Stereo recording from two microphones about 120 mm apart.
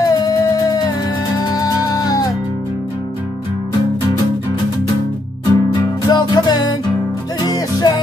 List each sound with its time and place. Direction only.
0.0 s music: 30° left (ahead or behind)
1.4 s music: 30° left (ahead or behind)
5.5 s music: 35° left (ahead or behind)